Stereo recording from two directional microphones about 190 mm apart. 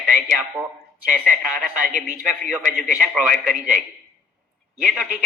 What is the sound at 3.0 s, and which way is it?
Speech, 5° left (ahead or behind).